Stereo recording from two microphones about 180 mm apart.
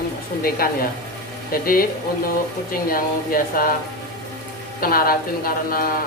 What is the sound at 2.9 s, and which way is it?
Speech, 50° left (ahead or behind).